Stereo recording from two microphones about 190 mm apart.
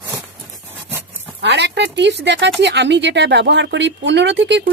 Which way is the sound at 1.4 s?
65° right (ahead or behind).